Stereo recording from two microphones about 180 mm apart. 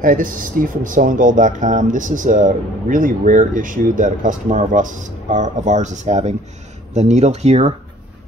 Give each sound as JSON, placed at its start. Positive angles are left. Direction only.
{"t": 0.0, "sound": "speech", "side_deg": -50}